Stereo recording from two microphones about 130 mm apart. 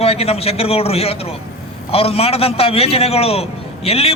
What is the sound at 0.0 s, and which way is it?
A man's voice, 50° left (ahead or behind).